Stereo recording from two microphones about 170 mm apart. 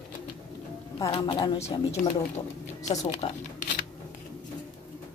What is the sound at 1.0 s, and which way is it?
Speech, 25° left (ahead or behind).